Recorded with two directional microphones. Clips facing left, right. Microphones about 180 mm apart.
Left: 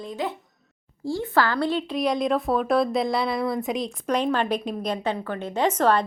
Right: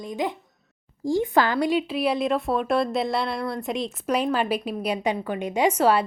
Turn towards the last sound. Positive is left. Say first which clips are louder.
# right 1 dB
turn(degrees=-10)  # may be behind; listen again after turning